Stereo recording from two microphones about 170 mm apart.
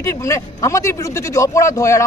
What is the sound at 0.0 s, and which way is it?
Speech, 20° left (ahead or behind).